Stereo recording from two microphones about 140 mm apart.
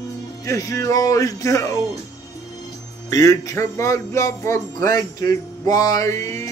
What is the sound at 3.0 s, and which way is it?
Music, 25° left (ahead or behind).